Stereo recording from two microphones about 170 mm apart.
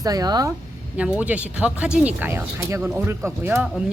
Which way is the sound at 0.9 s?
5° right (ahead or behind).